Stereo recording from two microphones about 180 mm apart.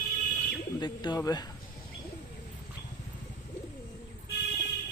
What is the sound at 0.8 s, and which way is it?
Speech, 25° left (ahead or behind).